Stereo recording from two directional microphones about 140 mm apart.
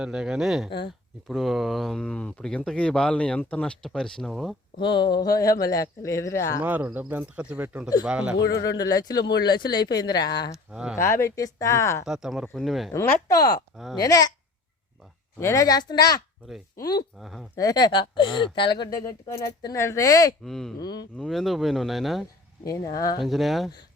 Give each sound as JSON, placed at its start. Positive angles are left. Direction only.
{"t": 0.0, "sound": "speech", "side_deg": -5}
{"t": 4.8, "sound": "speech", "side_deg": 35}
{"t": 6.6, "sound": "speech", "side_deg": -10}
{"t": 8.4, "sound": "speech", "side_deg": 25}
{"t": 10.7, "sound": "speech", "side_deg": -5}
{"t": 10.9, "sound": "speech", "side_deg": 20}
{"t": 12.0, "sound": "speech", "side_deg": -5}
{"t": 12.9, "sound": "speech", "side_deg": 20}
{"t": 15.4, "sound": "speech", "side_deg": 20}
{"t": 17.2, "sound": "speech", "side_deg": 0}
{"t": 17.6, "sound": "speech", "side_deg": 30}
{"t": 20.4, "sound": "speech", "side_deg": 0}
{"t": 20.7, "sound": "speech", "side_deg": 30}
{"t": 21.2, "sound": "speech", "side_deg": 0}